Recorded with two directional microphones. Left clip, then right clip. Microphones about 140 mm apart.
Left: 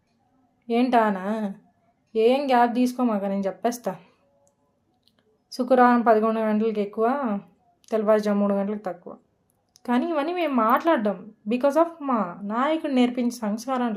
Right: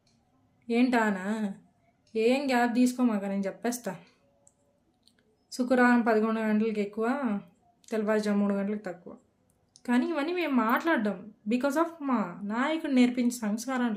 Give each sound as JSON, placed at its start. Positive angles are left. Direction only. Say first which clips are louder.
{"t": 0.7, "sound": "a woman's voice", "louder": "left 6 dB", "side_deg": -20}
{"t": 5.0, "sound": "a woman's voice", "louder": "left 4 dB", "side_deg": -25}